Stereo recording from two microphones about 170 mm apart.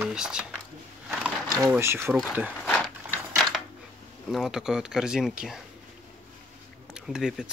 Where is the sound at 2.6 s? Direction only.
5° left (ahead or behind).